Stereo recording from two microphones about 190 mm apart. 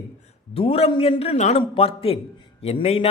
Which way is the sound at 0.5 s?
30° left (ahead or behind).